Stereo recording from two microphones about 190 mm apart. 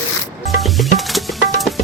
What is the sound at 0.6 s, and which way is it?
Music, centre (ahead or behind).